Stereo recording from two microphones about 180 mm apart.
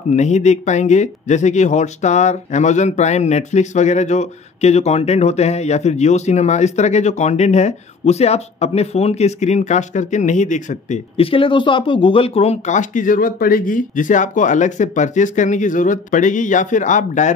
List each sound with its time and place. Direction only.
0.1 s speech: 40° left (ahead or behind)